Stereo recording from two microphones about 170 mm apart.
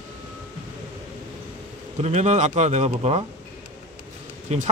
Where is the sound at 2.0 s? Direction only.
40° right (ahead or behind).